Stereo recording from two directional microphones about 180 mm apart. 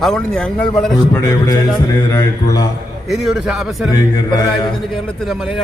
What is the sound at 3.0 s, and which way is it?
Speech, centre (ahead or behind).